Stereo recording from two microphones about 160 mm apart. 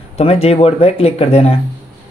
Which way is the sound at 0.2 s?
40° left (ahead or behind).